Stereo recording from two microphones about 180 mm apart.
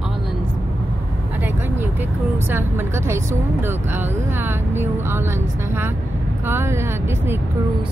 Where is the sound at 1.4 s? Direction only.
10° right (ahead or behind).